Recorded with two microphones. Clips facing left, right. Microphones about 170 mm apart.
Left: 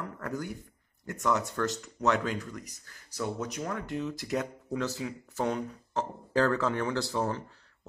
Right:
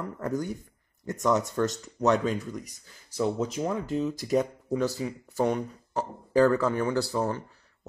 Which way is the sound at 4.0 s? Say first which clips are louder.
Right 7 dB; 15° right (ahead or behind).